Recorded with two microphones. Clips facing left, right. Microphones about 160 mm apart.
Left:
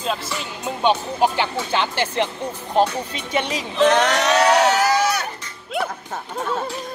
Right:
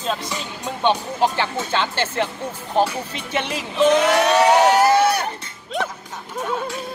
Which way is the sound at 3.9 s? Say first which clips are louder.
Right 2 dB; 75° left (ahead or behind).